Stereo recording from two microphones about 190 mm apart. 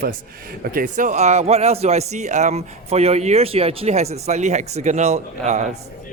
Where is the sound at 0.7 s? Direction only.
45° right (ahead or behind).